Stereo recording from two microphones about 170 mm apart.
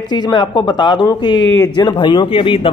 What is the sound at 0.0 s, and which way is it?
A man's voice, 25° left (ahead or behind).